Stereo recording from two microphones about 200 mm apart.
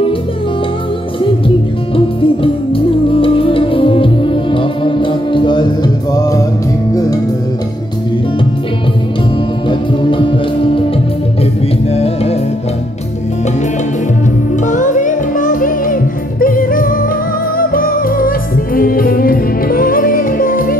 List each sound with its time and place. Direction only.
2.0 s music: 25° left (ahead or behind)
9.7 s music: 25° left (ahead or behind)
11.9 s music: 30° left (ahead or behind)
14.6 s music: 40° left (ahead or behind)